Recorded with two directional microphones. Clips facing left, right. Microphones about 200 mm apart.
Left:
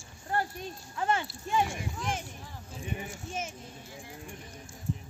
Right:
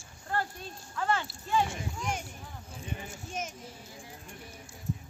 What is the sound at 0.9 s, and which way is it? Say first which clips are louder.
Speech: left 1 dB; 20° left (ahead or behind).